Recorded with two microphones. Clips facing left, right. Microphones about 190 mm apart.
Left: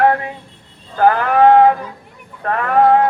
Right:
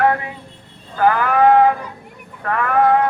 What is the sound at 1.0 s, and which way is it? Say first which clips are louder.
Sheep: left 3 dB; 40° left (ahead or behind).